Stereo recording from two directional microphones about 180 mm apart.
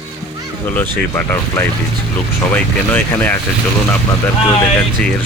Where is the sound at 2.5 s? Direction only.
10° left (ahead or behind).